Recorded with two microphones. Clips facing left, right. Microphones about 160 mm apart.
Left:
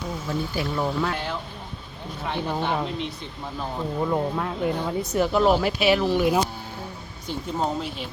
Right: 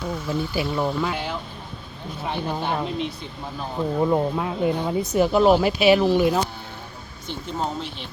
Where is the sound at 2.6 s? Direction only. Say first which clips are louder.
Even; 10° right (ahead or behind).